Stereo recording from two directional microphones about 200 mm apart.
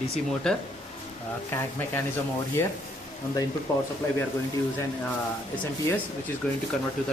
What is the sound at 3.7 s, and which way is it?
Speech, 10° left (ahead or behind).